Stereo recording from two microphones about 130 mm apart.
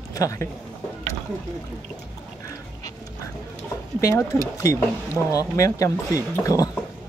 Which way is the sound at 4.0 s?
25° left (ahead or behind).